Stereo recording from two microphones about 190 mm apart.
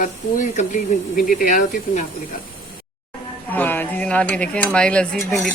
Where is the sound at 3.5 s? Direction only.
10° left (ahead or behind).